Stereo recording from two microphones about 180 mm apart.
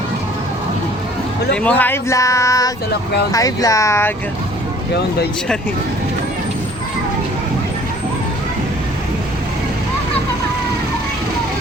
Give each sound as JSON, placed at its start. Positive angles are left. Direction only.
{"t": 1.5, "sound": "speech", "side_deg": 10}